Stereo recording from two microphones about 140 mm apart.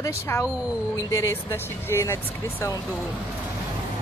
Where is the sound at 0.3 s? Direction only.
20° left (ahead or behind).